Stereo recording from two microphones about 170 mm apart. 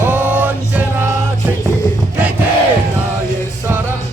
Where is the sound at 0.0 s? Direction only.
10° right (ahead or behind).